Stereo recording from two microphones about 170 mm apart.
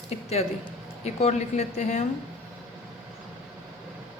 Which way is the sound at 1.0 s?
40° left (ahead or behind).